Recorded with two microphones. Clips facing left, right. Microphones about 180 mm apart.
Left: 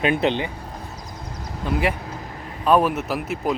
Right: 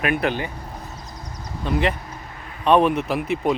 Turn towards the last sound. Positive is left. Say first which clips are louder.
# right 3 dB
turn(degrees=0)  # may be behind; listen again after turning